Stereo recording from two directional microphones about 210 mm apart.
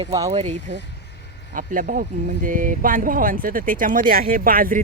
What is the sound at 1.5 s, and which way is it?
Speech, 40° right (ahead or behind).